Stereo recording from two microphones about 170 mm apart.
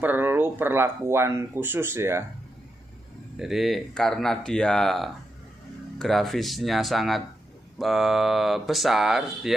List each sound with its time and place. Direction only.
0.0 s speech: 10° right (ahead or behind)
3.3 s speech: centre (ahead or behind)